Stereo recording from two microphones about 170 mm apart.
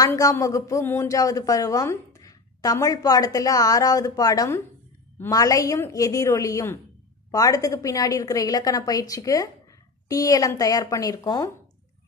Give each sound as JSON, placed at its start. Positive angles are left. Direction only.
{"t": 0.0, "sound": "speech", "side_deg": 20}